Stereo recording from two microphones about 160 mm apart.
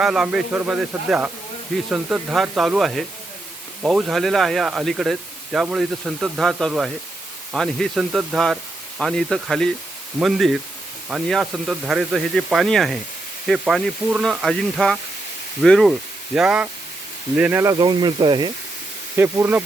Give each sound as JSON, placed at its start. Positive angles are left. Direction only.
{"t": 0.0, "sound": "speech", "side_deg": -5}
{"t": 17.7, "sound": "speech", "side_deg": -25}
{"t": 19.1, "sound": "speech", "side_deg": -15}